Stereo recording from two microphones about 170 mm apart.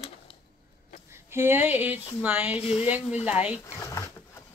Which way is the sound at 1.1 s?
15° right (ahead or behind).